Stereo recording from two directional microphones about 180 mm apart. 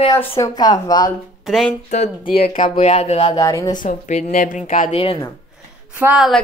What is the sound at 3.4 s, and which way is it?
Speech, 20° left (ahead or behind).